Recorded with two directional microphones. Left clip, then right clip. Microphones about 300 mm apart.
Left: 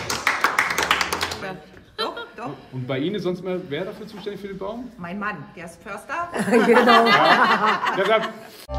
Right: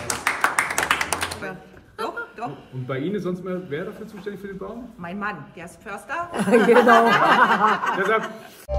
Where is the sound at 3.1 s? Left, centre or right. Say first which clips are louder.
Left 2 dB; left.